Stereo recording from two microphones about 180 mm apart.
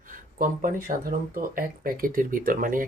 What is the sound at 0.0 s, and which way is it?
Speech, 50° right (ahead or behind).